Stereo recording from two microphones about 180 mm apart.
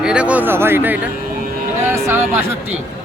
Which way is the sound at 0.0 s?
5° right (ahead or behind).